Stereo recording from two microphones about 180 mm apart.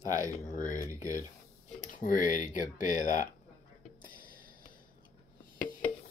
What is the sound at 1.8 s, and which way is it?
Speech, 45° left (ahead or behind).